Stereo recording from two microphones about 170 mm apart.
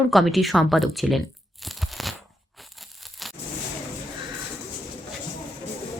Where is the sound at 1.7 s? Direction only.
Centre (ahead or behind).